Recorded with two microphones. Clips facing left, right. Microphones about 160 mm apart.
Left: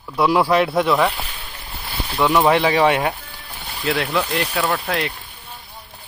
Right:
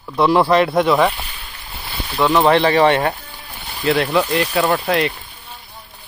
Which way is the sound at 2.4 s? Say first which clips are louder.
Right 4 dB; 5° left (ahead or behind).